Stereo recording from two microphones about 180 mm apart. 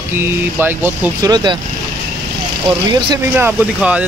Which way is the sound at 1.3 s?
25° right (ahead or behind).